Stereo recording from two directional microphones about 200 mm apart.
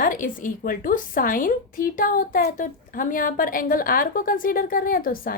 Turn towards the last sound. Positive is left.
turn(degrees=45)  # may be behind; listen again after turning